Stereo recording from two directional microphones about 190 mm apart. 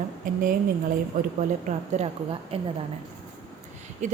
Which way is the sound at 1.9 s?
35° right (ahead or behind).